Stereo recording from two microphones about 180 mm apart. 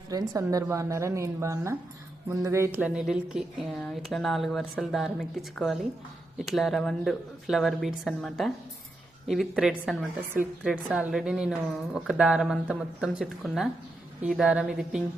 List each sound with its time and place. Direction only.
0.1 s a woman's voice: 20° right (ahead or behind); by 10.1 s centre (ahead or behind)
10.2 s a woman's voice: 10° right (ahead or behind)